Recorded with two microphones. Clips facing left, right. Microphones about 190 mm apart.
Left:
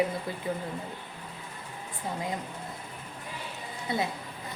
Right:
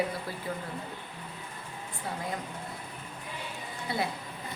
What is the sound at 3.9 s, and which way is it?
Speech, 20° left (ahead or behind).